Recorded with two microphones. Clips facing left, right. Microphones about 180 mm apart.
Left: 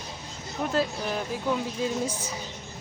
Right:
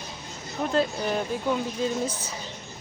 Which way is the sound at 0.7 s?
5° left (ahead or behind).